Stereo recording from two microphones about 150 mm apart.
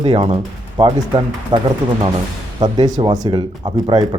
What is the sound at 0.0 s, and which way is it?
A man's voice, 35° right (ahead or behind).